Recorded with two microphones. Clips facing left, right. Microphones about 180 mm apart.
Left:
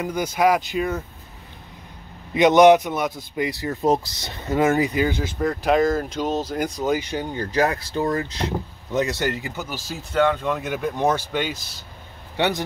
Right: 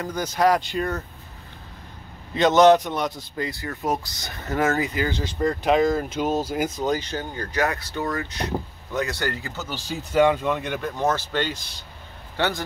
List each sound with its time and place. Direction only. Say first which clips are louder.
0.0 s speech: left 1 dB; 10° left (ahead or behind)
2.3 s speech: left 2 dB; 15° left (ahead or behind)
5.1 s speech: even; 5° left (ahead or behind)
6.9 s speech: left 2 dB; 10° left (ahead or behind)
7.3 s speech: left 4 dB; 30° left (ahead or behind)
10.1 s speech: right 1 dB; 10° right (ahead or behind); by 12.6 s 20° left (ahead or behind)